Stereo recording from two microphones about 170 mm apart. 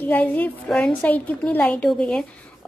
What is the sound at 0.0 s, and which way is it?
A woman's voice, 10° left (ahead or behind).